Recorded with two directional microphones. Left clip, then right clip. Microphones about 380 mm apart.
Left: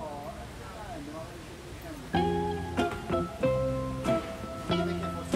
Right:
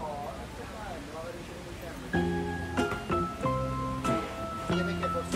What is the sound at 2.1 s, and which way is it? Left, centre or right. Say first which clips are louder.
Music: left 3 dB; centre.